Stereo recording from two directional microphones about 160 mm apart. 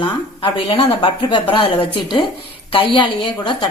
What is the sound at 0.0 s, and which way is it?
A woman's voice, 30° left (ahead or behind).